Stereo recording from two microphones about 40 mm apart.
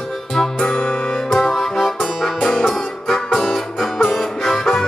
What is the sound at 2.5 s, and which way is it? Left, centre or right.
Music, centre.